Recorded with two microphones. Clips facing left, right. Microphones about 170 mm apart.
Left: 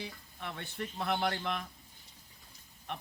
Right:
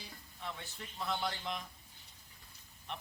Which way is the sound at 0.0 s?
60° left (ahead or behind).